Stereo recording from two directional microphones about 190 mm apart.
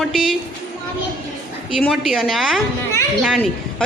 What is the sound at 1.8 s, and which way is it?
A woman's voice, centre (ahead or behind).